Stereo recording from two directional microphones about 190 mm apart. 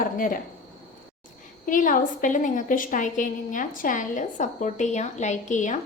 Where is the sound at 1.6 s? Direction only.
45° left (ahead or behind).